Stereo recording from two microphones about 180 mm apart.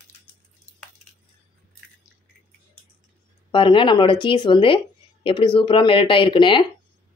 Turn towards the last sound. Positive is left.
turn(degrees=25)  # may be behind; listen again after turning